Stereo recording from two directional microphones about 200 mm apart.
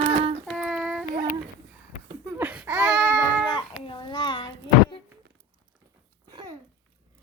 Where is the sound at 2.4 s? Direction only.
10° right (ahead or behind).